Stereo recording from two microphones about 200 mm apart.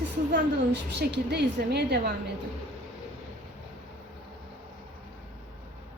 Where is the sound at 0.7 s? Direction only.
55° right (ahead or behind).